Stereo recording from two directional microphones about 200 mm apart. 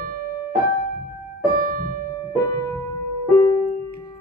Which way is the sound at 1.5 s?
45° right (ahead or behind).